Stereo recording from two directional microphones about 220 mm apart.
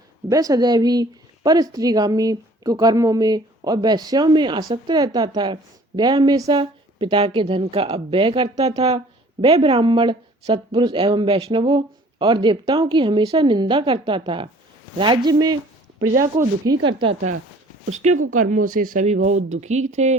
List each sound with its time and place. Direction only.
0.3 s a woman's voice: 15° right (ahead or behind)
18.7 s speech: 40° right (ahead or behind)